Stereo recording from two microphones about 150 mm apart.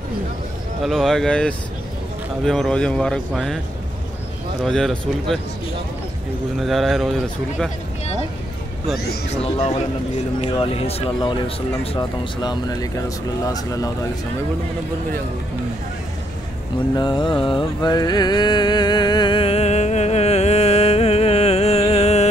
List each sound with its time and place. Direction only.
0.8 s speech: centre (ahead or behind)
4.6 s speech: 5° left (ahead or behind)
6.6 s speech: centre (ahead or behind)
9.3 s a man's voice: 45° left (ahead or behind); by 13.9 s 25° left (ahead or behind)
16.9 s mantra: 30° left (ahead or behind)